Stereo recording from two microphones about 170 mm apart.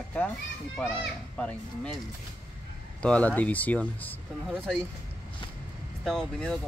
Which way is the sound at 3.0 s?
5° left (ahead or behind).